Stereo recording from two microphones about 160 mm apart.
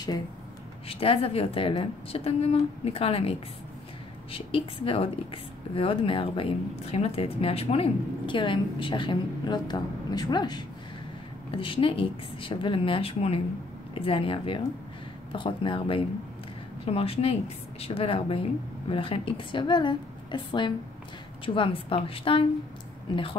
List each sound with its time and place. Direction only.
0.8 s a woman's voice: 35° left (ahead or behind)